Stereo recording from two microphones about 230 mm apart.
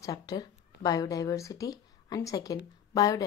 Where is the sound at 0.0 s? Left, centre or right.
Centre.